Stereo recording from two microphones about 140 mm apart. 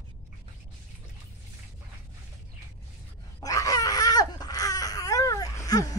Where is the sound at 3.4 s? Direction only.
25° left (ahead or behind).